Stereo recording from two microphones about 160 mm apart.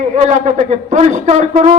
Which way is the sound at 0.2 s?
50° right (ahead or behind).